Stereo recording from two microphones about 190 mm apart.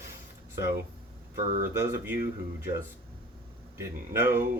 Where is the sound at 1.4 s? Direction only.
40° right (ahead or behind).